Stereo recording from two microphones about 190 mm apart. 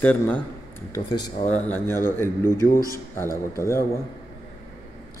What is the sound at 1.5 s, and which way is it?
A man's voice, 10° left (ahead or behind).